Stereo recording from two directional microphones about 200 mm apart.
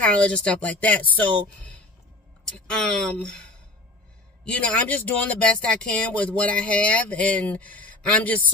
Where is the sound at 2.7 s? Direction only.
5° left (ahead or behind).